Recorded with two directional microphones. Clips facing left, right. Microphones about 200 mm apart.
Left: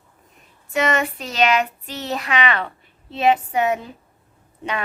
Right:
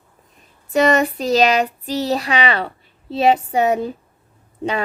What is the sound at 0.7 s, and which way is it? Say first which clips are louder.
Speech: right 6 dB; 35° right (ahead or behind).